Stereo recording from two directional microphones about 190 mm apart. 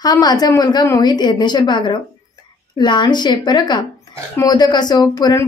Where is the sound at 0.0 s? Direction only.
20° left (ahead or behind).